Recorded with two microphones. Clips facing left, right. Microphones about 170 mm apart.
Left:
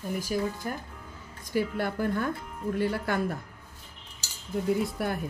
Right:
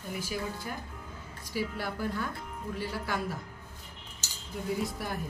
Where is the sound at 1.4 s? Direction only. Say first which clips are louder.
Left 6 dB; 55° left (ahead or behind).